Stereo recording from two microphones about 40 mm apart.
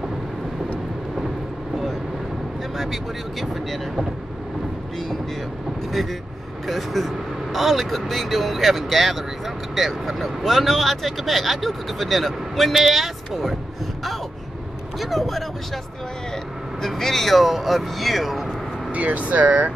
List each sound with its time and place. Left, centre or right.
2.8 s speech: centre
6.7 s speech: centre
15.0 s speech: centre
16.8 s speech: centre
18.9 s speech: right